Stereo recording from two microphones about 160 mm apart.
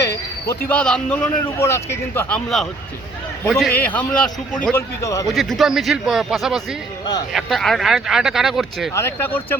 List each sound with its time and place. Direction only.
0.0 s a sound: 20° left (ahead or behind)
0.7 s a man's voice: 5° left (ahead or behind)
1.5 s a man's voice: 15° left (ahead or behind)
3.4 s a man's voice: 5° left (ahead or behind)
5.3 s speech: centre (ahead or behind)
7.0 s speech: 25° left (ahead or behind)
7.3 s speech: centre (ahead or behind)
8.9 s a man's voice: 15° left (ahead or behind)